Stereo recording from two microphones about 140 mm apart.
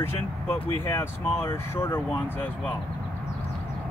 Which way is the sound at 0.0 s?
15° left (ahead or behind).